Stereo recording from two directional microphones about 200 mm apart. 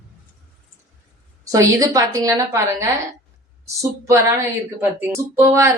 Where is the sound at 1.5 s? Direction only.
15° right (ahead or behind).